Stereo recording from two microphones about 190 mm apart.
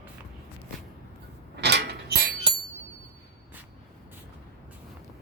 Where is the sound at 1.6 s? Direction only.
60° right (ahead or behind).